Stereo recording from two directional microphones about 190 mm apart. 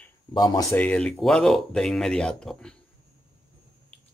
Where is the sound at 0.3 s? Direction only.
20° left (ahead or behind).